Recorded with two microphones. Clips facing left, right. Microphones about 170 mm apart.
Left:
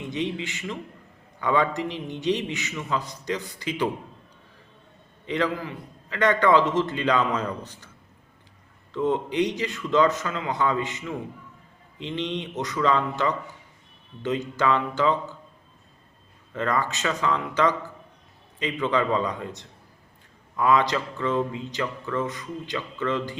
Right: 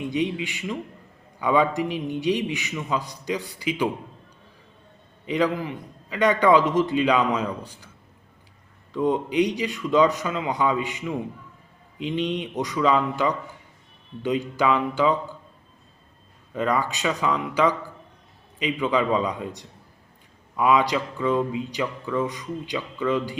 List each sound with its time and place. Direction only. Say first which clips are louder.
0.0 s speech: right 3 dB; 15° right (ahead or behind)
5.2 s speech: right 3 dB; 15° right (ahead or behind)
8.9 s speech: right 2 dB; 15° right (ahead or behind)
16.5 s speech: right 2 dB; 10° right (ahead or behind)